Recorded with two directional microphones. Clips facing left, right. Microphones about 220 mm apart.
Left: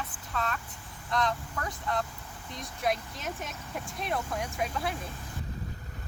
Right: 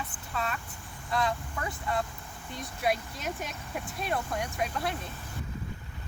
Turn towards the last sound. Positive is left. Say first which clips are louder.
# even
turn(degrees=0)  # may be behind; listen again after turning